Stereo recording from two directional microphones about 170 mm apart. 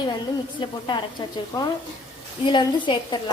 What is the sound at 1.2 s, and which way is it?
Speech, 25° left (ahead or behind).